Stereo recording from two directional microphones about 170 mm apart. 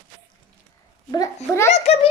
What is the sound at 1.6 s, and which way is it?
Speech, 40° left (ahead or behind).